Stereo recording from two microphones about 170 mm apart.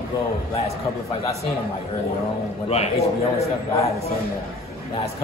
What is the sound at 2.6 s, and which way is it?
Speech, 40° left (ahead or behind).